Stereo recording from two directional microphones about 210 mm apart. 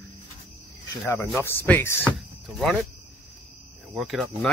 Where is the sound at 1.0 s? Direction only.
10° left (ahead or behind).